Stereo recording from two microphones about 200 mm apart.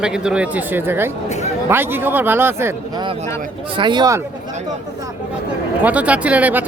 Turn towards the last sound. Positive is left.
turn(degrees=-10)  # may be behind; listen again after turning